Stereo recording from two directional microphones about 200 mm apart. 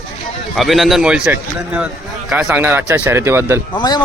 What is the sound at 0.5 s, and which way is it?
A man's voice, centre (ahead or behind).